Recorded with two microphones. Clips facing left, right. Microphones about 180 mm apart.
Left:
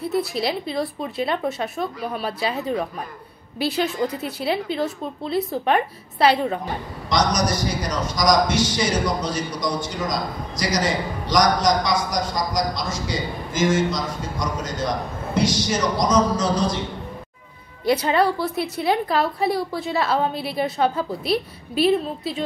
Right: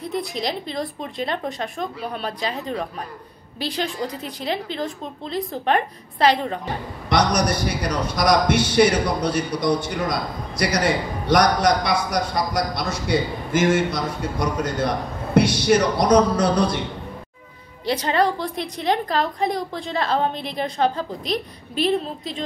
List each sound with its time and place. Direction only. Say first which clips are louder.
0.0 s a woman's voice: left 3 dB; 5° left (ahead or behind)
7.1 s a man's voice: right 1 dB; 60° right (ahead or behind)
17.8 s a woman's voice: left 2 dB; 10° left (ahead or behind)